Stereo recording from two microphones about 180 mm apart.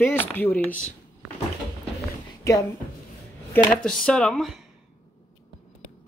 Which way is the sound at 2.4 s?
20° left (ahead or behind).